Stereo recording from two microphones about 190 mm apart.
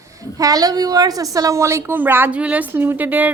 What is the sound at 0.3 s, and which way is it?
A woman's voice, 20° right (ahead or behind).